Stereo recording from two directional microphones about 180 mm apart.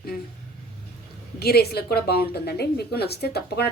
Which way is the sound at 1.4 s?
60° left (ahead or behind).